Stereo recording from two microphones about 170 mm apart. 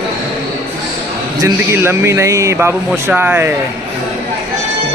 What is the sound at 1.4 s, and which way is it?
Speech, 15° right (ahead or behind).